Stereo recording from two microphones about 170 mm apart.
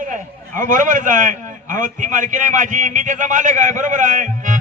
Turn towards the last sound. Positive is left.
turn(degrees=-50)  # may be behind; listen again after turning